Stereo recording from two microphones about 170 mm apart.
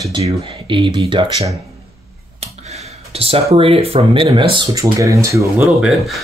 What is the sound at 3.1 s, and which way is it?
Speech, 35° right (ahead or behind).